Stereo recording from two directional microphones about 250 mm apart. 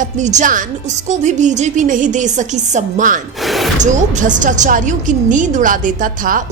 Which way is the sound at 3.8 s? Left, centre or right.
Right.